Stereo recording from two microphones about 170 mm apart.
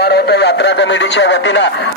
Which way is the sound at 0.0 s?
75° left (ahead or behind).